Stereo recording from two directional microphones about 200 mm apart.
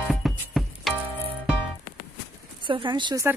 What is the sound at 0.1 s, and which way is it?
Music, centre (ahead or behind).